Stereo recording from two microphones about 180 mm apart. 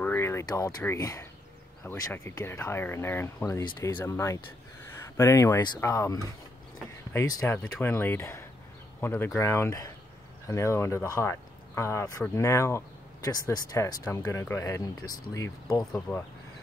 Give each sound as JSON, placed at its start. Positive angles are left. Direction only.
{"t": 0.0, "sound": "speech", "side_deg": 15}
{"t": 15.8, "sound": "speech", "side_deg": 5}